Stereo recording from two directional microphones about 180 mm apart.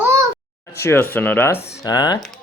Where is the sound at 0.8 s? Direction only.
15° left (ahead or behind).